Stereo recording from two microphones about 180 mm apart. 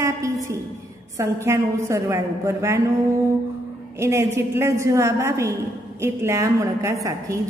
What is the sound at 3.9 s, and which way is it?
A woman's voice, 15° right (ahead or behind).